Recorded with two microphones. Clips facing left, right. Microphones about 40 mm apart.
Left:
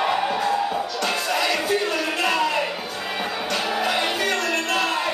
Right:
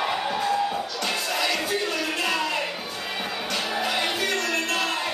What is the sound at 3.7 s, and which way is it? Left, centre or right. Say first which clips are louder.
Music: left 2 dB; centre.